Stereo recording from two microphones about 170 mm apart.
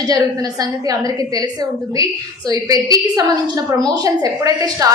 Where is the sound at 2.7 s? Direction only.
20° right (ahead or behind).